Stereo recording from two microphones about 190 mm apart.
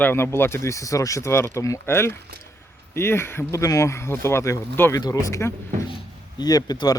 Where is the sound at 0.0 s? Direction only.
10° left (ahead or behind).